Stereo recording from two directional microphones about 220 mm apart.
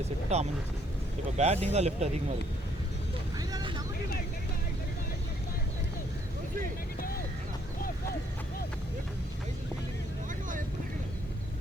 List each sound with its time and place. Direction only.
0.3 s speech: 30° right (ahead or behind)
3.3 s vehicle: 20° right (ahead or behind)